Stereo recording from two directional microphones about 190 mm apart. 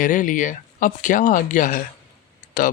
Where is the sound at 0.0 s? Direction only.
45° left (ahead or behind).